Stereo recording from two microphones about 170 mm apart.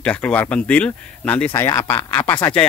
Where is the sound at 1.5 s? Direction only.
20° left (ahead or behind).